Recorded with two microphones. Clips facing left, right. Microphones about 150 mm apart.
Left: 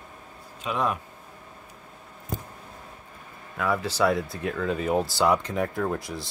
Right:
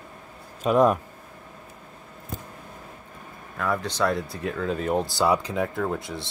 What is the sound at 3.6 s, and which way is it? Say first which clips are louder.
Speech: left 1 dB; 5° left (ahead or behind).